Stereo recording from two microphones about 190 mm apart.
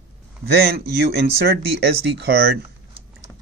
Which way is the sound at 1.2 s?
60° right (ahead or behind).